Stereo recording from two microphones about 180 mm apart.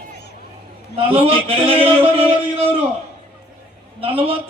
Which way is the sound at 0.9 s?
30° right (ahead or behind).